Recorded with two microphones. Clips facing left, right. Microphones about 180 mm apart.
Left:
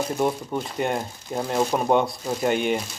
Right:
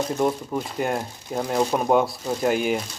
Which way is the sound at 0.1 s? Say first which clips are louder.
Right 1 dB; 5° left (ahead or behind).